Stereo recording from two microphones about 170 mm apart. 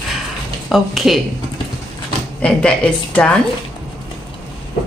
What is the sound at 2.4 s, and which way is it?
Speech, 5° left (ahead or behind).